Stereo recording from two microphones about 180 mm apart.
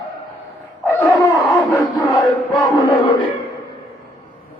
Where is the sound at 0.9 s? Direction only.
5° left (ahead or behind).